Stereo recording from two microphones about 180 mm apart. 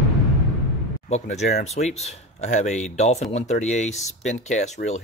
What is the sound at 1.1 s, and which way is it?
Speech, 40° left (ahead or behind).